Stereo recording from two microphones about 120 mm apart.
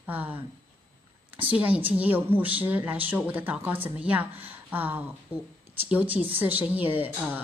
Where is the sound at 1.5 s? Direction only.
15° right (ahead or behind).